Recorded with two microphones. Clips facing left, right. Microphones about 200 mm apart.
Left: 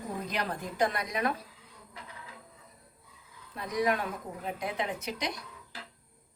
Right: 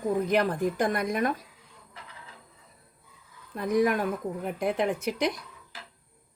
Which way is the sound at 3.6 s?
50° right (ahead or behind).